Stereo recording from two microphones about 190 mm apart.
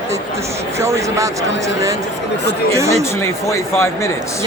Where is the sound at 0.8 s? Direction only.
15° right (ahead or behind).